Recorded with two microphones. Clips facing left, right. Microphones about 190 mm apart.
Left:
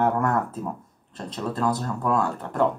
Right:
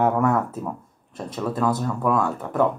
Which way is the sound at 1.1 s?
10° right (ahead or behind).